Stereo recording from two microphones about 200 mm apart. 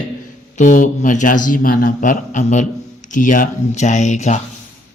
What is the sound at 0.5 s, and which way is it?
Speech, 40° left (ahead or behind).